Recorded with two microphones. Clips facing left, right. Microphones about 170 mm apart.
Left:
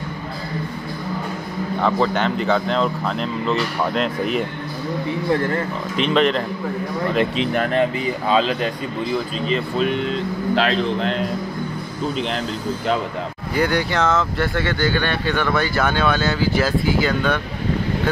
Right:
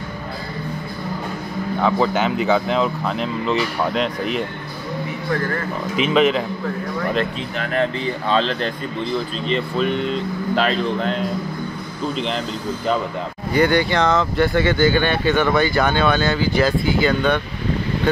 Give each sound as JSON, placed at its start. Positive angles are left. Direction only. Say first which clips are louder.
{"t": 1.8, "sound": "speech", "louder": "right 1 dB", "side_deg": 0}
{"t": 5.9, "sound": "speech", "louder": "right 1 dB", "side_deg": -5}
{"t": 7.8, "sound": "speech", "louder": "left 1 dB", "side_deg": 10}
{"t": 13.5, "sound": "speech", "louder": "right 4 dB", "side_deg": 0}